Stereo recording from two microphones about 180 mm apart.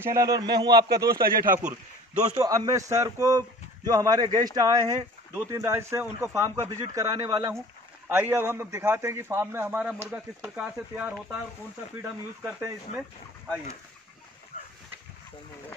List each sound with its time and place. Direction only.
0.0 s a man's voice: 20° right (ahead or behind)
0.8 s a man's voice: 60° right (ahead or behind)
2.3 s a man's voice: 20° right (ahead or behind)
14.5 s boat: 50° left (ahead or behind)